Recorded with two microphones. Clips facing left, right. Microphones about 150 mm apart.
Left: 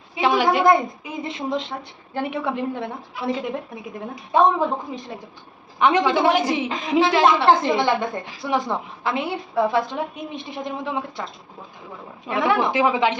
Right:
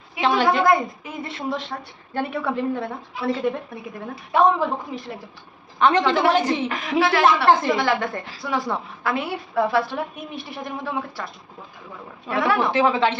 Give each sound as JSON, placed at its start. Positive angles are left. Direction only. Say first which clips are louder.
{"t": 0.2, "sound": "a woman's voice", "louder": "left 1 dB", "side_deg": 10}
{"t": 12.3, "sound": "a woman's voice", "louder": "even", "side_deg": 20}